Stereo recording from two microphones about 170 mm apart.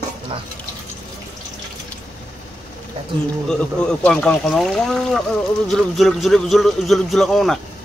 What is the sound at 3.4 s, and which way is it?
Cutlery, 5° left (ahead or behind).